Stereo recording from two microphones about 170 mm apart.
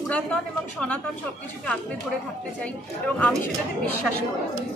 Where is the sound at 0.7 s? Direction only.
5° left (ahead or behind).